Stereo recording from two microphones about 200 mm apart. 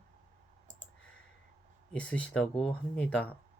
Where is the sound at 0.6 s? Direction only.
40° right (ahead or behind).